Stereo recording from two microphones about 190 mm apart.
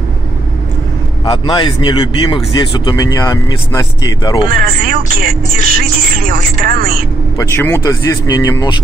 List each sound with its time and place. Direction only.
1.3 s speech: 25° left (ahead or behind)
4.6 s speech: 50° right (ahead or behind)
7.3 s speech: 15° left (ahead or behind)